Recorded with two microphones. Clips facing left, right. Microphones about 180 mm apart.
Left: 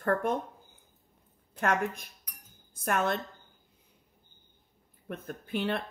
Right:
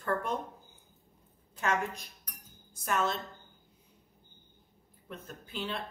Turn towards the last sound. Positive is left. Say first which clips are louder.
# left 7 dB
turn(degrees=60)  # may be behind; listen again after turning